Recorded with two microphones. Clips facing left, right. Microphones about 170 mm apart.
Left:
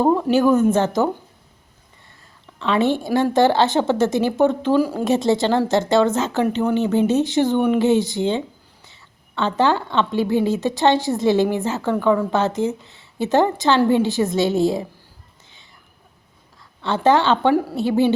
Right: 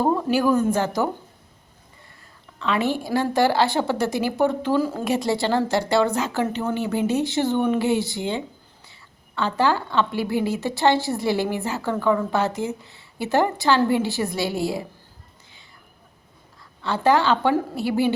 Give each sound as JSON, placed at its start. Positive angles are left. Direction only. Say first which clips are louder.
{"t": 0.0, "sound": "a woman's voice", "louder": "left 4 dB", "side_deg": 15}
{"t": 2.6, "sound": "a woman's voice", "louder": "left 4 dB", "side_deg": 25}
{"t": 16.8, "sound": "a woman's voice", "louder": "left 3 dB", "side_deg": 25}